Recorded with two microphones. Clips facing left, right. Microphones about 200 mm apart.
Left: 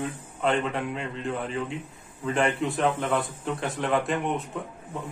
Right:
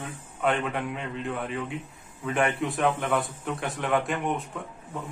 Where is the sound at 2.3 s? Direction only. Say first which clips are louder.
Left 1 dB; centre (ahead or behind).